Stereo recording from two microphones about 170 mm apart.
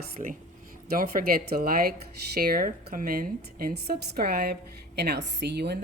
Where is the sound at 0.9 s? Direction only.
60° right (ahead or behind).